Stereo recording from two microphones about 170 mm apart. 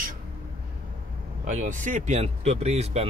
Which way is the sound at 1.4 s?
50° right (ahead or behind).